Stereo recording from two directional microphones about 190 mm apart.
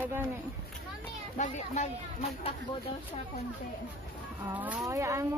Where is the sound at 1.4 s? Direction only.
35° left (ahead or behind).